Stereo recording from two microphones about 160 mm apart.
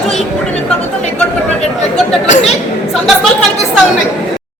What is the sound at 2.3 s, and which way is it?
Speech, 40° left (ahead or behind).